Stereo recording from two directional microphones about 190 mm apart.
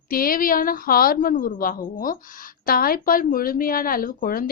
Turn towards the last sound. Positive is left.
turn(degrees=50)  # may be behind; listen again after turning